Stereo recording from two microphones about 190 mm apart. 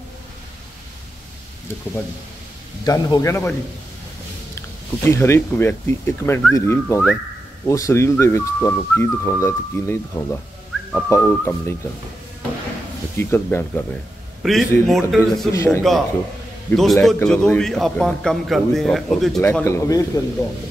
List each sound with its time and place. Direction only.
2.8 s speech: 20° left (ahead or behind)
4.6 s speech: 15° left (ahead or behind)
13.2 s speech: 15° left (ahead or behind)
14.4 s a man's voice: centre (ahead or behind)
15.5 s speech: 15° left (ahead or behind)
16.7 s a man's voice: centre (ahead or behind)
19.5 s speech: 15° left (ahead or behind)